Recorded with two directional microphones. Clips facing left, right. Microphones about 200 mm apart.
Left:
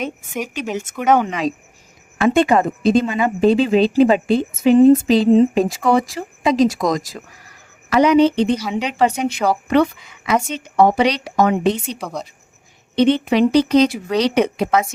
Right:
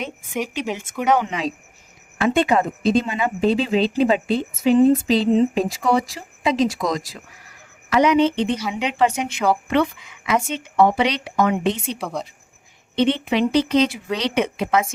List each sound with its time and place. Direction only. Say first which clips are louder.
1.0 s a woman's voice: left 3 dB; 50° left (ahead or behind)
11.9 s speech: even; centre (ahead or behind)
13.0 s a woman's voice: left 5 dB; 40° left (ahead or behind)